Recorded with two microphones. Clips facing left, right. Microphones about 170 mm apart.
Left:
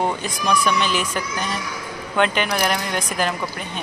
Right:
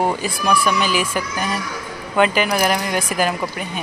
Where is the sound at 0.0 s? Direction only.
5° right (ahead or behind).